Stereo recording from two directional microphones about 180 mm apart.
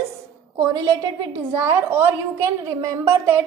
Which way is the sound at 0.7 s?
25° right (ahead or behind).